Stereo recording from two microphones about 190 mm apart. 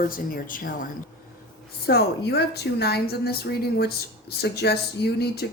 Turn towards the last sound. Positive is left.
turn(degrees=60)  # may be behind; listen again after turning